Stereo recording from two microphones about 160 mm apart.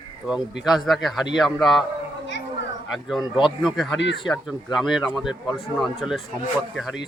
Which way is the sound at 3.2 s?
30° left (ahead or behind).